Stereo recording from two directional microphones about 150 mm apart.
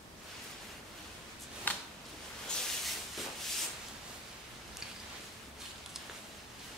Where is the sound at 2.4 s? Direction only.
Centre (ahead or behind).